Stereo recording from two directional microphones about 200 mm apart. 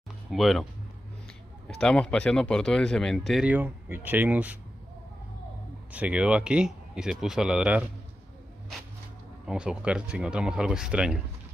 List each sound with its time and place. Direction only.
0.3 s speech: centre (ahead or behind)
1.8 s speech: 5° left (ahead or behind)
5.9 s speech: 5° right (ahead or behind)
9.5 s speech: 5° right (ahead or behind)